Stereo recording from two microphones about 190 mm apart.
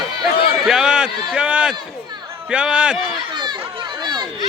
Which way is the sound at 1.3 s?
5° right (ahead or behind).